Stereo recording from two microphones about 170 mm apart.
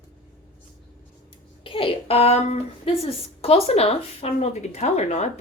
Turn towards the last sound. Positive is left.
turn(degrees=40)  # may be behind; listen again after turning